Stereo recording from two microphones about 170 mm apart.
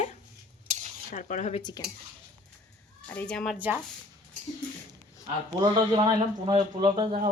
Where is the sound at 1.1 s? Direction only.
45° left (ahead or behind).